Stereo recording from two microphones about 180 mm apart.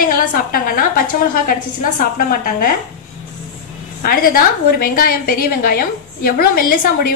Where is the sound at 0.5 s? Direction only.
55° left (ahead or behind).